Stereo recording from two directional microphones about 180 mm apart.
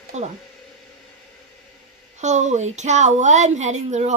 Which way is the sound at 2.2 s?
40° right (ahead or behind).